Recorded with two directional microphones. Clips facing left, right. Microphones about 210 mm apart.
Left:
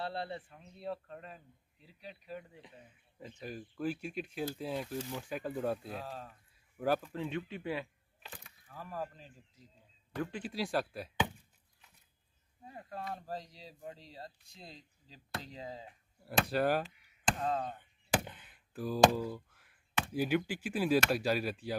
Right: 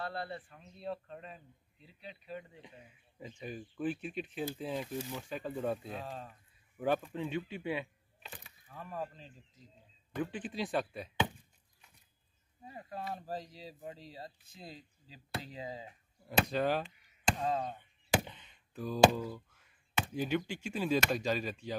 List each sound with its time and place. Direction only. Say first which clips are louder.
0.0 s speech: left 1 dB; 25° left (ahead or behind)
0.5 s speech: even; 10° left (ahead or behind)
2.8 s speech: right 2 dB; 10° right (ahead or behind)
3.3 s speech: even; centre (ahead or behind)
7.0 s speech: right 1 dB; 10° right (ahead or behind)
12.6 s speech: right 1 dB; 5° right (ahead or behind)
16.5 s chop: left 1 dB; 5° left (ahead or behind)
19.3 s a sound: left 2 dB; 10° left (ahead or behind)
20.2 s speech: left 3 dB; 10° left (ahead or behind)